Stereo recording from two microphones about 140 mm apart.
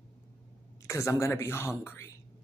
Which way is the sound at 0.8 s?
20° left (ahead or behind).